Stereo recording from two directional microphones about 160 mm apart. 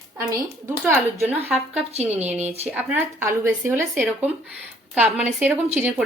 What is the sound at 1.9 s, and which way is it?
Speech, 40° right (ahead or behind).